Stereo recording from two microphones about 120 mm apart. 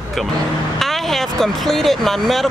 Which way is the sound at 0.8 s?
Centre (ahead or behind).